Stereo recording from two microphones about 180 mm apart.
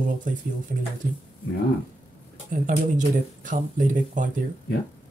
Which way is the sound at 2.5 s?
45° right (ahead or behind).